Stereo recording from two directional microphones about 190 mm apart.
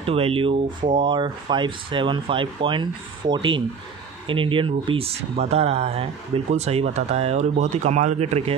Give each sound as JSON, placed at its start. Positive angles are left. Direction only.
{"t": 0.0, "sound": "speech", "side_deg": -30}